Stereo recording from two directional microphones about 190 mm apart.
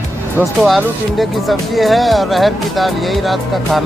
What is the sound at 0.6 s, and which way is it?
Speech, centre (ahead or behind).